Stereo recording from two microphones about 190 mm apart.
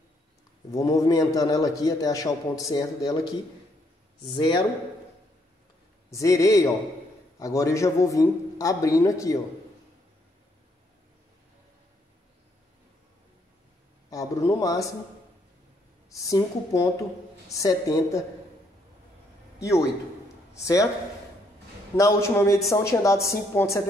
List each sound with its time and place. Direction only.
0.7 s a man's voice: 15° left (ahead or behind)
4.2 s speech: 25° left (ahead or behind)
6.0 s a man's voice: 15° left (ahead or behind)
14.1 s a man's voice: 15° left (ahead or behind)
16.1 s a man's voice: 15° left (ahead or behind)
20.6 s a man's voice: 15° left (ahead or behind)
21.9 s a man's voice: 15° left (ahead or behind)